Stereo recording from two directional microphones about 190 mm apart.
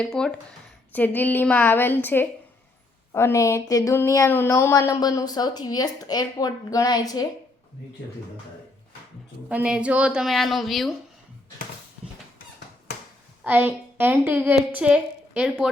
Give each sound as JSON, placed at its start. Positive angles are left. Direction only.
{"t": 0.0, "sound": "a woman's voice", "side_deg": 5}
{"t": 9.5, "sound": "a woman's voice", "side_deg": -5}
{"t": 13.4, "sound": "a woman's voice", "side_deg": -10}